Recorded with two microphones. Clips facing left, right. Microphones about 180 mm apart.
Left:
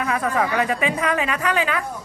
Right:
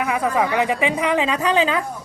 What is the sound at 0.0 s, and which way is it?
A woman's voice, 10° right (ahead or behind).